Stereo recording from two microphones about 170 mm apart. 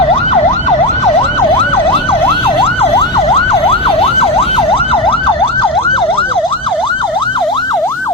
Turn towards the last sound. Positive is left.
turn(degrees=30)  # may be behind; listen again after turning